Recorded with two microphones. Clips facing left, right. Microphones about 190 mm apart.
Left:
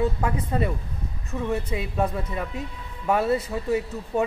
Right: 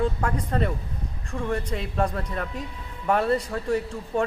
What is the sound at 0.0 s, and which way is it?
A man's voice, 5° left (ahead or behind).